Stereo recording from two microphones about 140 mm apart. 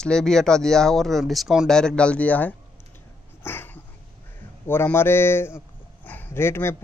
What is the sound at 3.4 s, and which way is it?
Dog, 15° left (ahead or behind).